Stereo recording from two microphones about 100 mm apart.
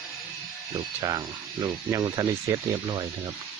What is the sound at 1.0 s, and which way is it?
Speech, 40° right (ahead or behind).